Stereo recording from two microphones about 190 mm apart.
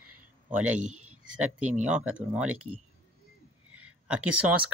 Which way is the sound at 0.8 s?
40° right (ahead or behind).